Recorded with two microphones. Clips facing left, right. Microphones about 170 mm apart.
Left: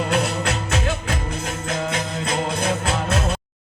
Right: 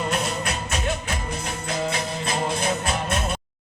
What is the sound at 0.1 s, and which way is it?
Music, 65° left (ahead or behind).